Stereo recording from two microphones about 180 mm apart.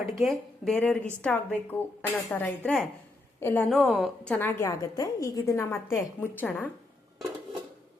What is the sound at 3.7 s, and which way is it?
A woman's voice, centre (ahead or behind).